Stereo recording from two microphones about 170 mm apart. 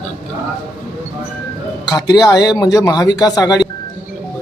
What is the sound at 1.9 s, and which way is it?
Speech, 25° left (ahead or behind).